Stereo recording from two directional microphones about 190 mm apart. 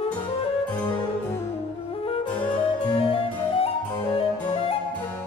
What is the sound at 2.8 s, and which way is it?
Harpsichord, 25° left (ahead or behind).